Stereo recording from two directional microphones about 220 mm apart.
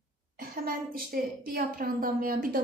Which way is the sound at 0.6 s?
40° right (ahead or behind).